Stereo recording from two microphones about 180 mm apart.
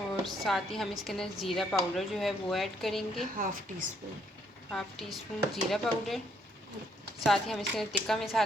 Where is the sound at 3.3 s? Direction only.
50° right (ahead or behind).